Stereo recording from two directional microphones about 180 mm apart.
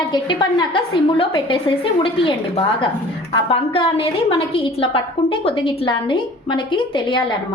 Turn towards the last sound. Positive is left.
turn(degrees=25)  # may be behind; listen again after turning